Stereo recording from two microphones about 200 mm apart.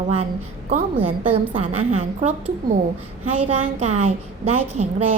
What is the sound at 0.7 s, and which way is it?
A woman's voice, 30° right (ahead or behind).